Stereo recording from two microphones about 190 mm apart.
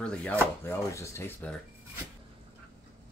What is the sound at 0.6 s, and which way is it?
Speech, 15° left (ahead or behind).